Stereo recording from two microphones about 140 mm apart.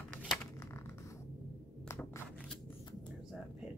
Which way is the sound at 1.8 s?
20° left (ahead or behind).